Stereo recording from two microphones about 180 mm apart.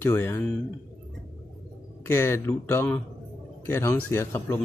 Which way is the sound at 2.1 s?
15° left (ahead or behind).